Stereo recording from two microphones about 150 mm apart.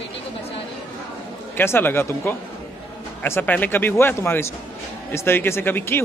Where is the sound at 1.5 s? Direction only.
15° left (ahead or behind).